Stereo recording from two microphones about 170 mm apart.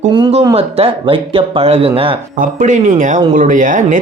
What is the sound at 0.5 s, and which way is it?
Speech, 35° right (ahead or behind).